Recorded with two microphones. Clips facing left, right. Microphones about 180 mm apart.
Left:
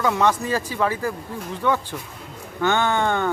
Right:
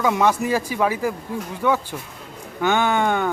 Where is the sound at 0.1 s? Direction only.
10° right (ahead or behind).